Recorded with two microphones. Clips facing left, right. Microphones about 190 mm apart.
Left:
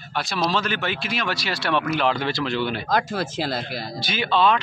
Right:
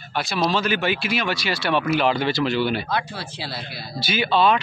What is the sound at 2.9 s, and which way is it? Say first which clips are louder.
Speech: left 4 dB; 45° left (ahead or behind).